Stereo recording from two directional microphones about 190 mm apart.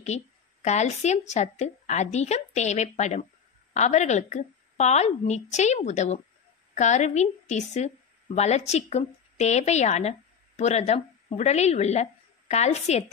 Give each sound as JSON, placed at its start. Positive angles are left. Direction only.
{"t": 0.0, "sound": "a woman's voice", "side_deg": 35}